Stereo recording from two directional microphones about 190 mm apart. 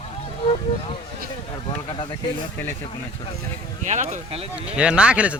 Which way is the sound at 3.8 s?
40° right (ahead or behind).